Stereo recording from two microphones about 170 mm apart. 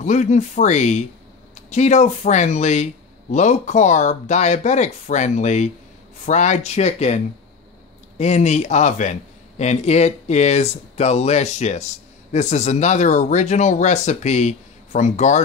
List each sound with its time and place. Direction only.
0.0 s speech: 45° left (ahead or behind)
8.2 s speech: 40° left (ahead or behind)